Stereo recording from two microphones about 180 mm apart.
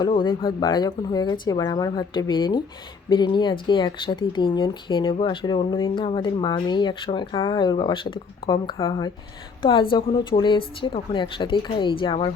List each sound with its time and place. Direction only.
0.0 s speech: 25° left (ahead or behind)